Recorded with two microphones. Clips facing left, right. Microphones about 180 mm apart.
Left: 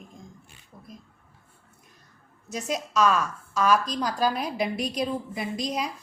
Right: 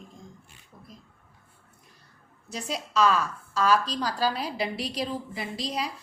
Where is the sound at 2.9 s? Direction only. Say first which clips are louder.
Even; 15° left (ahead or behind).